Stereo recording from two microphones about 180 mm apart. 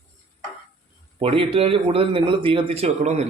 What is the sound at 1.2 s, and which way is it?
Speech, 30° right (ahead or behind).